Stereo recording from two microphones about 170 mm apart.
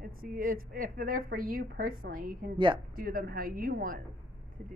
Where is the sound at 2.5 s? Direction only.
30° right (ahead or behind).